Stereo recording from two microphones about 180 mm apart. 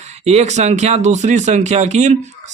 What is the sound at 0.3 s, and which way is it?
Speech, 40° right (ahead or behind).